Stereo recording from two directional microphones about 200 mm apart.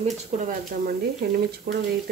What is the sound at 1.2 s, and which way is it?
Speech, 50° right (ahead or behind).